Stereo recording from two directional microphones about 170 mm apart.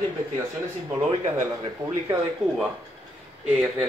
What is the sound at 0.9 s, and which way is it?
Speech, 20° right (ahead or behind).